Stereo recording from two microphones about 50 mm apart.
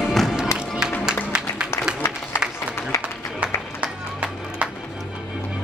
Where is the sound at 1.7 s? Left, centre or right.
Left.